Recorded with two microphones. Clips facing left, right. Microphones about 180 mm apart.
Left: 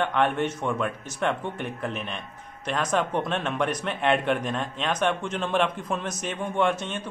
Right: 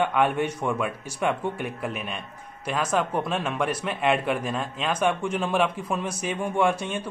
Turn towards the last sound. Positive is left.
turn(degrees=-10)  # may be behind; listen again after turning